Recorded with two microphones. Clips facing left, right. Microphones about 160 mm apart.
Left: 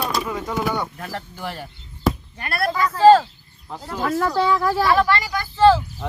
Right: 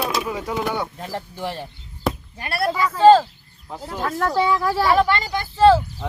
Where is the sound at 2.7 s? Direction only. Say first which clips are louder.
Even; 10° right (ahead or behind).